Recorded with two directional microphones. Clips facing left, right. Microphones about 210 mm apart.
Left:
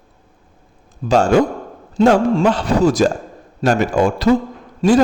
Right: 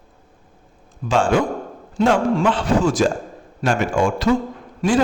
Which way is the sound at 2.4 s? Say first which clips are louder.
Left 3 dB; 40° left (ahead or behind).